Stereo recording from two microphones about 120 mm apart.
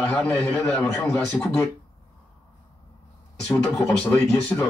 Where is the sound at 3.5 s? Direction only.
5° left (ahead or behind).